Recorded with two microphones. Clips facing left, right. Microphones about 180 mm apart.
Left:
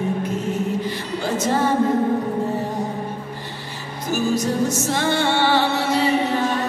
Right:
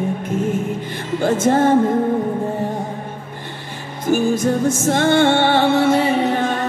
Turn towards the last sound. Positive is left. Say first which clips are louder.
# right 2 dB
turn(degrees=-50)  # may be behind; listen again after turning